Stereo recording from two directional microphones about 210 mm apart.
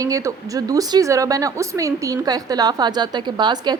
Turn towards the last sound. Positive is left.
turn(degrees=-20)  # may be behind; listen again after turning